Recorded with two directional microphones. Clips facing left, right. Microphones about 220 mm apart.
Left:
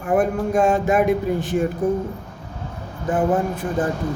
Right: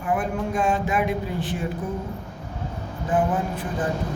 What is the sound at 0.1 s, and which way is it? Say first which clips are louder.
Speech: left 6 dB; 45° left (ahead or behind).